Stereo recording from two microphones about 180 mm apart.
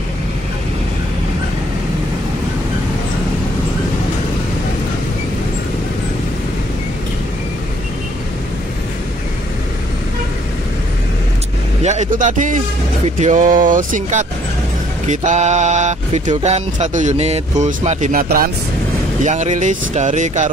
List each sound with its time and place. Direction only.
11.8 s speech: 40° right (ahead or behind)
15.0 s a sound: 40° right (ahead or behind)
19.2 s speech: 40° right (ahead or behind)